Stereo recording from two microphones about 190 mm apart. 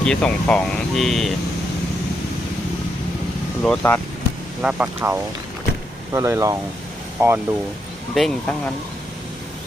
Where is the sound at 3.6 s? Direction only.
10° left (ahead or behind).